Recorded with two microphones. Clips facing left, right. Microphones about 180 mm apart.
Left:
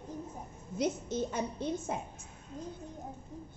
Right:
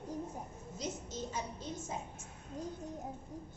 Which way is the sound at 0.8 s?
60° left (ahead or behind).